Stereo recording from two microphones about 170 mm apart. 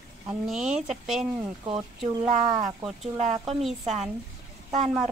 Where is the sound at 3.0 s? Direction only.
35° right (ahead or behind).